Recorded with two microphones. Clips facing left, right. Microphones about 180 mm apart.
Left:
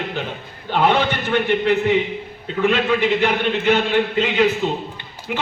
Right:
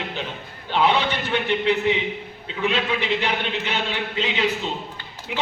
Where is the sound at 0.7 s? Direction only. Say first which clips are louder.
Left 3 dB; 50° left (ahead or behind).